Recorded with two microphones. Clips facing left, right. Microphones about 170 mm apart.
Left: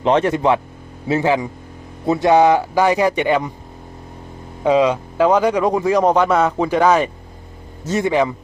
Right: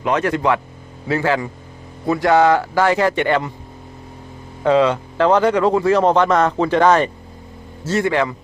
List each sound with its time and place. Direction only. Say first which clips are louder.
0.0 s speech: left 3 dB; 30° left (ahead or behind)
4.6 s speech: even; 10° left (ahead or behind)